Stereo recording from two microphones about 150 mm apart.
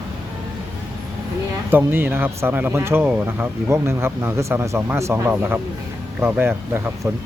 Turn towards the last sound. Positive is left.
turn(degrees=-15)  # may be behind; listen again after turning